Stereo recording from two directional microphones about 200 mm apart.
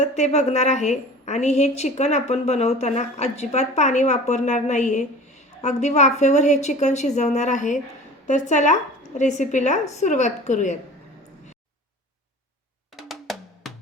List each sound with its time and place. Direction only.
0.0 s a woman's voice: 35° left (ahead or behind)
13.0 s drum: centre (ahead or behind)